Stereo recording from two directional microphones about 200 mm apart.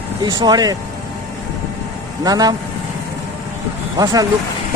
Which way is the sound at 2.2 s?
20° right (ahead or behind).